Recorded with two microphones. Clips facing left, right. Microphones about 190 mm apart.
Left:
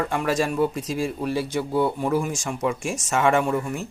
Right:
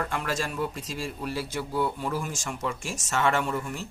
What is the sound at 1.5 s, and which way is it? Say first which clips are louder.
Speech: left 5 dB; 20° left (ahead or behind).